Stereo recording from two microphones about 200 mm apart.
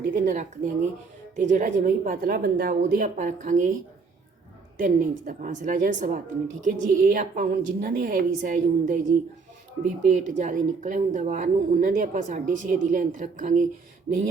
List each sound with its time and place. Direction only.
0.0 s speech: 40° right (ahead or behind)
4.8 s a woman's voice: 40° right (ahead or behind)